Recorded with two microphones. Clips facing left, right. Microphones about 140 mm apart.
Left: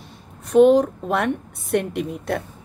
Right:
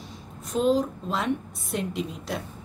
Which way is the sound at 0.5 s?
65° left (ahead or behind).